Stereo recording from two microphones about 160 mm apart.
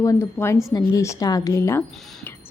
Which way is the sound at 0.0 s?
20° left (ahead or behind).